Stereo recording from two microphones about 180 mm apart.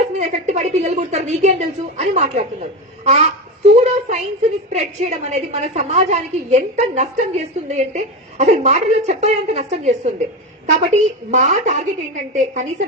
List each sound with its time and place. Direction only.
0.2 s a woman's voice: 40° right (ahead or behind)